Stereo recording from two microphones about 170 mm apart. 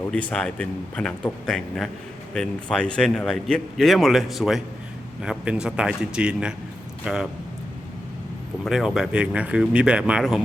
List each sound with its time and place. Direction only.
0.0 s speech: 10° left (ahead or behind)
8.6 s speech: centre (ahead or behind)